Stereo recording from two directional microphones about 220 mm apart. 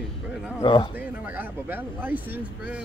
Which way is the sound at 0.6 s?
20° left (ahead or behind).